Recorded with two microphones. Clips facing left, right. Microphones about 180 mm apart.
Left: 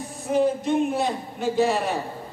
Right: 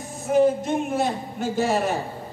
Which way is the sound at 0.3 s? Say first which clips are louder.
Right 2 dB; 45° right (ahead or behind).